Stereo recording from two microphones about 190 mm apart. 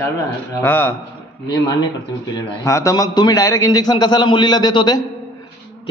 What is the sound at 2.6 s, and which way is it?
A man's voice, 15° left (ahead or behind).